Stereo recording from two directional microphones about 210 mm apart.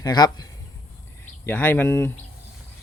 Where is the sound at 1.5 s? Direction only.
10° left (ahead or behind).